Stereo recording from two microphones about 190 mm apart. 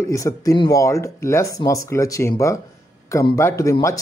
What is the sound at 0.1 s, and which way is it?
Speech, 15° left (ahead or behind).